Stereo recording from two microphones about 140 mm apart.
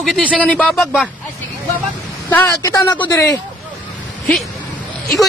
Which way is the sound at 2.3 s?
20° left (ahead or behind).